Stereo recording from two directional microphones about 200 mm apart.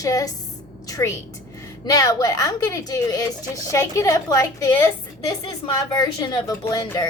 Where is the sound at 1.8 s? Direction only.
20° left (ahead or behind).